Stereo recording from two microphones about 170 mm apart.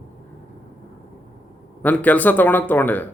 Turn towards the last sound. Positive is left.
turn(degrees=10)  # may be behind; listen again after turning